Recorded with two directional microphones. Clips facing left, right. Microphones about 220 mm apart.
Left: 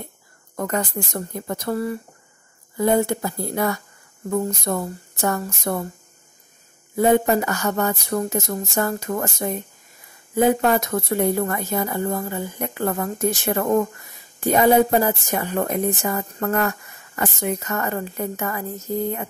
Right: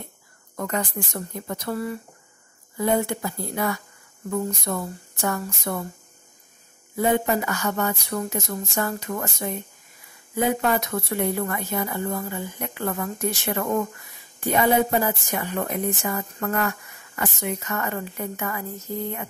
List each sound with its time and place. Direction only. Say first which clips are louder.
0.6 s a woman's voice: left 3 dB; 45° left (ahead or behind)
7.0 s a woman's voice: left 5 dB; 45° left (ahead or behind)